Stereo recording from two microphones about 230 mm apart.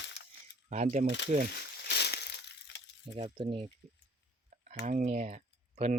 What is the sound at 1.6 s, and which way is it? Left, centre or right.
Crushing, left.